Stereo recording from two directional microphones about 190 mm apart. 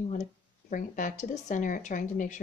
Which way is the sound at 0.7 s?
45° left (ahead or behind).